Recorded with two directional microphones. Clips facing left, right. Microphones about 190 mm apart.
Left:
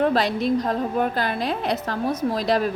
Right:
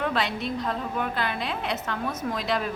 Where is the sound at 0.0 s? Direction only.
35° left (ahead or behind).